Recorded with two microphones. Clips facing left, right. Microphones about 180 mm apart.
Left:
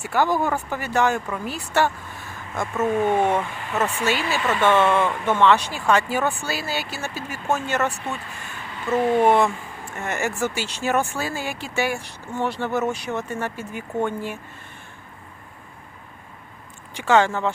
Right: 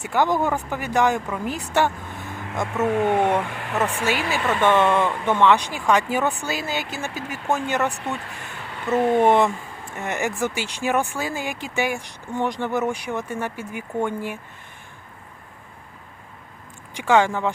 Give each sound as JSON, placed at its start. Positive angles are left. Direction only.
{"t": 0.0, "sound": "speech", "side_deg": -20}
{"t": 16.9, "sound": "speech", "side_deg": -15}